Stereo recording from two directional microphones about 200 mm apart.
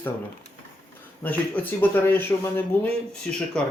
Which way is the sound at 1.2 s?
10° left (ahead or behind).